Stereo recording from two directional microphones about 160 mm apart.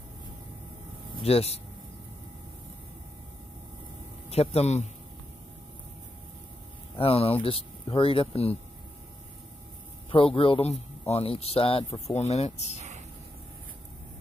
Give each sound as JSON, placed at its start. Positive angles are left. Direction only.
{"t": 1.2, "sound": "speech", "side_deg": 40}
{"t": 4.3, "sound": "speech", "side_deg": 40}
{"t": 7.0, "sound": "speech", "side_deg": 35}
{"t": 10.1, "sound": "speech", "side_deg": 35}
{"t": 12.7, "sound": "a sound", "side_deg": -45}